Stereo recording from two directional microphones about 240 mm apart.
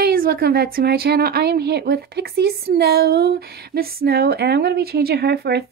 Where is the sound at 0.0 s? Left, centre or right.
Right.